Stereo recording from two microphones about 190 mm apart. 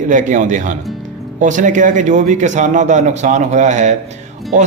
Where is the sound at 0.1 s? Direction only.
40° right (ahead or behind).